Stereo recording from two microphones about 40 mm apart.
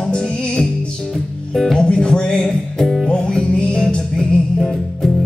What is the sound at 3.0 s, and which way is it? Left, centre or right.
Music, left.